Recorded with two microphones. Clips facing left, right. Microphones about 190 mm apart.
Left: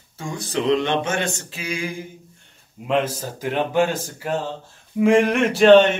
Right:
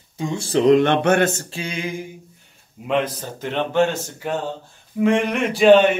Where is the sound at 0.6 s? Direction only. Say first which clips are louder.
Right 5 dB; 50° right (ahead or behind).